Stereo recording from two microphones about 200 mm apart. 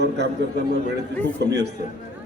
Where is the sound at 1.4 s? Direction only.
55° right (ahead or behind).